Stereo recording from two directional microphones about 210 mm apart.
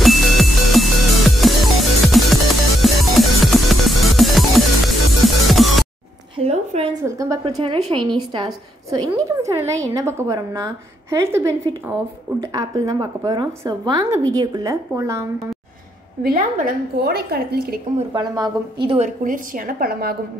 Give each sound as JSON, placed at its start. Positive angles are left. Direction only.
{"t": 0.0, "sound": "music", "side_deg": 0}
{"t": 6.3, "sound": "a sound", "side_deg": -30}
{"t": 7.1, "sound": "a sound", "side_deg": -15}
{"t": 7.4, "sound": "a woman's voice", "side_deg": -25}
{"t": 16.2, "sound": "a woman's voice", "side_deg": -45}
{"t": 18.1, "sound": "a woman's voice", "side_deg": -20}
{"t": 18.9, "sound": "a woman's voice", "side_deg": -40}